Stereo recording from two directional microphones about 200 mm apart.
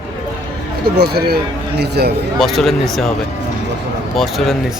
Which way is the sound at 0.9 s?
50° right (ahead or behind).